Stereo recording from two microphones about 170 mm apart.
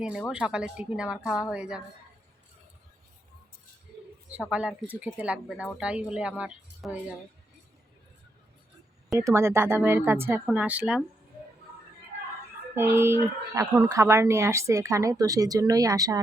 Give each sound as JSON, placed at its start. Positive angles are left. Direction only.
{"t": 0.0, "sound": "a woman's voice", "side_deg": -5}
{"t": 4.3, "sound": "speech", "side_deg": -10}
{"t": 9.1, "sound": "speech", "side_deg": -15}
{"t": 12.7, "sound": "speech", "side_deg": -15}